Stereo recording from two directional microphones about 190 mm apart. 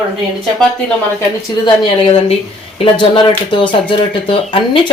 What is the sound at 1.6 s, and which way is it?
Speech, 30° left (ahead or behind).